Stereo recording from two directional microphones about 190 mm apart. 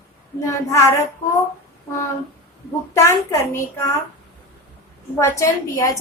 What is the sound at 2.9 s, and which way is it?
A woman's voice, 15° left (ahead or behind).